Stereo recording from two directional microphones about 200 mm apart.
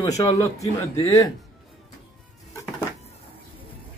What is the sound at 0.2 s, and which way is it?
Speech, 15° left (ahead or behind).